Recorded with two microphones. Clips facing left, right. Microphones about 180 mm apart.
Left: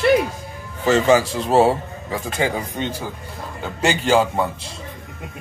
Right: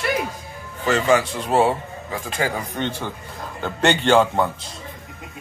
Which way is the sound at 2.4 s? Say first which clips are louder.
Left 1 dB; 10° left (ahead or behind).